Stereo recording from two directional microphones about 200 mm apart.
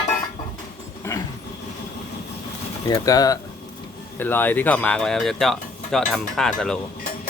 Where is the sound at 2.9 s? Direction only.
15° left (ahead or behind).